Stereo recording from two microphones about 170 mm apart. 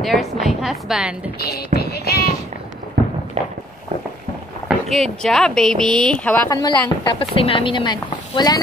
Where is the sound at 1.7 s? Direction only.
65° left (ahead or behind).